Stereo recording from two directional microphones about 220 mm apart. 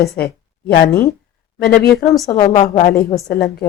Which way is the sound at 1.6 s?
45° left (ahead or behind).